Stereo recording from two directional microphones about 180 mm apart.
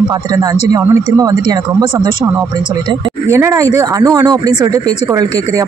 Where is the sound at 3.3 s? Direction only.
15° right (ahead or behind).